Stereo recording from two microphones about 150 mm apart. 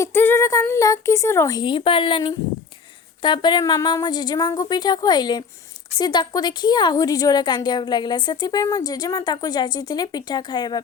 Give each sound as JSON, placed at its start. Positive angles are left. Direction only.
{"t": 0.0, "sound": "a woman's voice", "side_deg": 15}